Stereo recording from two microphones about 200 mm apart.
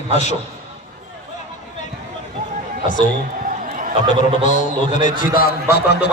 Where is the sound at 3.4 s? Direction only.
40° right (ahead or behind).